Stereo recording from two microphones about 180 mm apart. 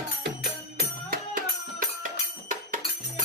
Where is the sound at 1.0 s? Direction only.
50° right (ahead or behind).